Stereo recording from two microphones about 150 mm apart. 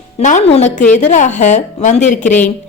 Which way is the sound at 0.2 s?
50° left (ahead or behind).